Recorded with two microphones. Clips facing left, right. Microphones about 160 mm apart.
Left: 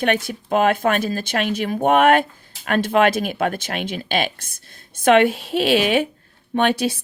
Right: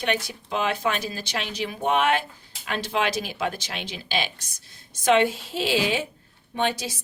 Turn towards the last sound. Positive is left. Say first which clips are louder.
# left 7 dB
turn(degrees=60)  # may be behind; listen again after turning